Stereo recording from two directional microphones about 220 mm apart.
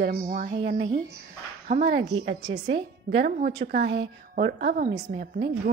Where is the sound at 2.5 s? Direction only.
25° right (ahead or behind).